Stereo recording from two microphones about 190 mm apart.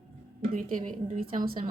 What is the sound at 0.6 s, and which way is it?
A woman's voice, 45° right (ahead or behind).